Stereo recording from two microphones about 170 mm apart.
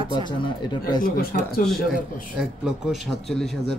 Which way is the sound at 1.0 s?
60° left (ahead or behind).